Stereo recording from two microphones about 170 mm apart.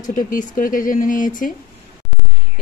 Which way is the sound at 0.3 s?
55° left (ahead or behind).